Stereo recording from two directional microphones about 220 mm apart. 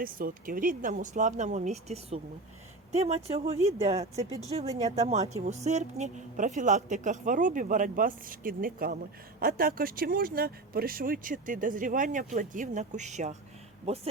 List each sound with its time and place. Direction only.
0.0 s speech: 40° right (ahead or behind)